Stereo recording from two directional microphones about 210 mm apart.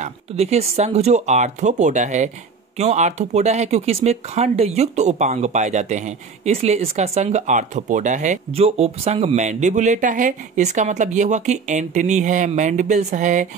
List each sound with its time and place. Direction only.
0.0 s speech: 30° right (ahead or behind)